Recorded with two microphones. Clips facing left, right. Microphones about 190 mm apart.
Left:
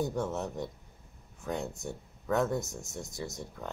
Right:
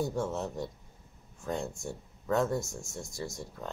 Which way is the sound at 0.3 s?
20° left (ahead or behind).